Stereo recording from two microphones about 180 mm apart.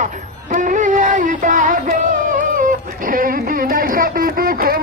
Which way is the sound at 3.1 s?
50° right (ahead or behind).